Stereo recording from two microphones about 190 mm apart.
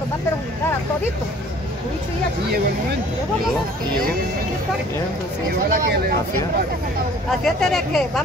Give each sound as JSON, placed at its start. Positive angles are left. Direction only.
{"t": 5.7, "sound": "speech", "side_deg": -50}
{"t": 7.2, "sound": "speech", "side_deg": 0}